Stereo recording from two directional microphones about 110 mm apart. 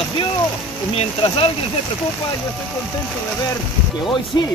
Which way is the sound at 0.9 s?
70° left (ahead or behind).